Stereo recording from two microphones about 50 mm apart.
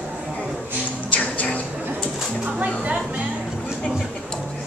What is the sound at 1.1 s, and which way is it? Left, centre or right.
Music, left.